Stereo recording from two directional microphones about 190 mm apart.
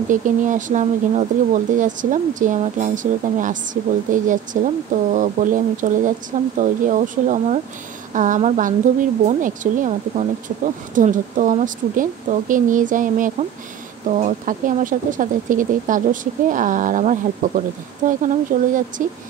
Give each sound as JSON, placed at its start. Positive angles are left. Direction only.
{"t": 0.1, "sound": "speech", "side_deg": -45}